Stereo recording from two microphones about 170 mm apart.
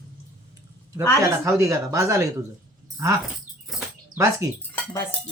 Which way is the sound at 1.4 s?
20° right (ahead or behind).